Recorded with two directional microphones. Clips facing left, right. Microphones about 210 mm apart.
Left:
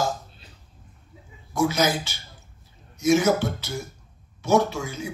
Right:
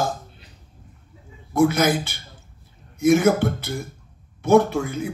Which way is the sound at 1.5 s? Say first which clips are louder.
Right 4 dB; 55° right (ahead or behind).